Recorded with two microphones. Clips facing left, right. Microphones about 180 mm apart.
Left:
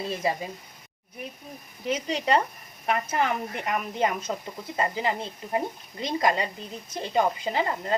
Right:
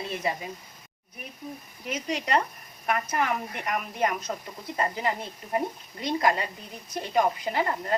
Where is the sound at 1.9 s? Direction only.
30° left (ahead or behind).